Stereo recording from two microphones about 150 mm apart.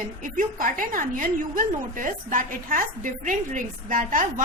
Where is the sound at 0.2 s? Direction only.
65° right (ahead or behind).